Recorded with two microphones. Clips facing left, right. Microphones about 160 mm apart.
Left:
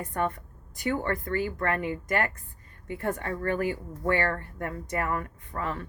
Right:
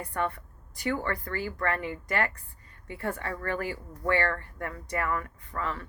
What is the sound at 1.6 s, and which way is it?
A woman's voice, 50° left (ahead or behind).